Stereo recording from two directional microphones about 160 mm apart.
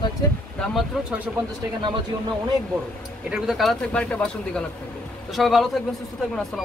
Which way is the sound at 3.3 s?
Centre (ahead or behind).